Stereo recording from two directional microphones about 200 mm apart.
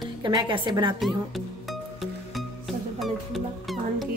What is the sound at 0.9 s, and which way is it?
Speech, centre (ahead or behind).